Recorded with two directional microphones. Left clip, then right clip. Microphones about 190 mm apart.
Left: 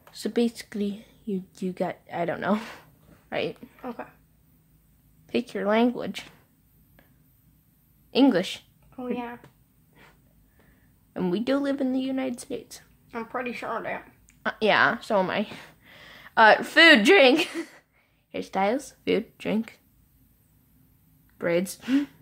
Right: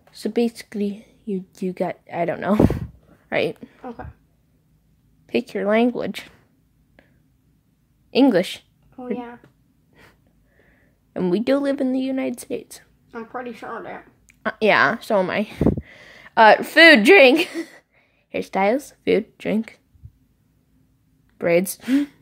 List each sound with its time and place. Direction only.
0.1 s speech: 10° right (ahead or behind)
3.3 s a woman's voice: 30° right (ahead or behind)
3.8 s a woman's voice: 10° left (ahead or behind)
5.2 s speech: 15° right (ahead or behind)
8.1 s speech: 20° right (ahead or behind)
10.0 s wheeze: 15° right (ahead or behind)
11.1 s speech: 20° right (ahead or behind)
13.1 s a woman's voice: 20° left (ahead or behind)
14.2 s a woman's voice: 20° right (ahead or behind)
21.4 s speech: 25° right (ahead or behind)